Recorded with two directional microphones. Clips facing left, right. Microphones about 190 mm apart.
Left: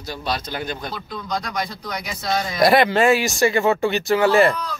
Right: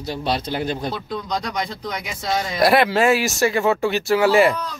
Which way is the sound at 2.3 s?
5° right (ahead or behind).